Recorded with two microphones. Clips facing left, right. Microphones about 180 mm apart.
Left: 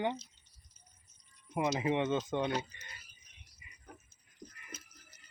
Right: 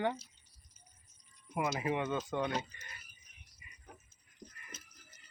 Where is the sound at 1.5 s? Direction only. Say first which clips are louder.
Left 3 dB; 25° left (ahead or behind).